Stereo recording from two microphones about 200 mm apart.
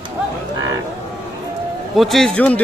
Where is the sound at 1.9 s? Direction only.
Centre (ahead or behind).